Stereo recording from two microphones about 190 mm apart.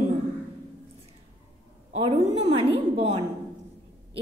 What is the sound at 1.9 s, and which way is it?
A woman's voice, 30° right (ahead or behind).